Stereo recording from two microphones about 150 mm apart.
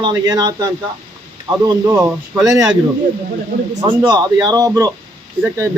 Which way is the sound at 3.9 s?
25° right (ahead or behind).